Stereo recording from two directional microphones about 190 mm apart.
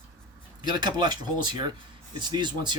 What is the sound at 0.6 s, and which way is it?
Speech, 20° right (ahead or behind).